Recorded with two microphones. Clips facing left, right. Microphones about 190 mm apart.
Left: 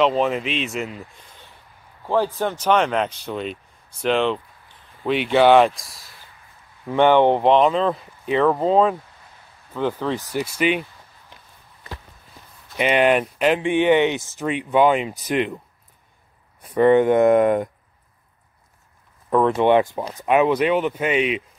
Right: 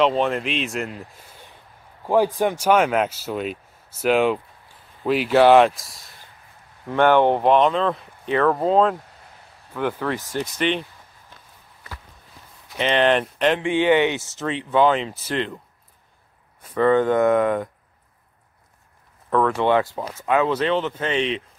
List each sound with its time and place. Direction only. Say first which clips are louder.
0.0 s speech: left 1 dB; centre (ahead or behind)
2.0 s speech: right 2 dB; 15° right (ahead or behind)
6.9 s speech: left 1 dB; 15° left (ahead or behind)
7.5 s speech: left 1 dB; 5° left (ahead or behind)
8.5 s speech: left 1 dB; centre (ahead or behind)
9.8 s speech: left 1 dB; 15° left (ahead or behind)
12.7 s speech: left 1 dB; 10° left (ahead or behind)
13.6 s speech: left 1 dB; 20° left (ahead or behind)
16.7 s speech: left 3 dB; 20° left (ahead or behind)
19.3 s speech: left 3 dB; 20° left (ahead or behind)